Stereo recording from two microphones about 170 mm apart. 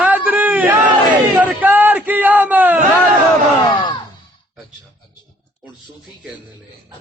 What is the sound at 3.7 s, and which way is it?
Music, 30° left (ahead or behind).